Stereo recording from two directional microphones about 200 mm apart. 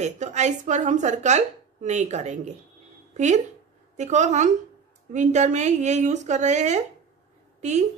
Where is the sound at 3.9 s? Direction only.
35° right (ahead or behind).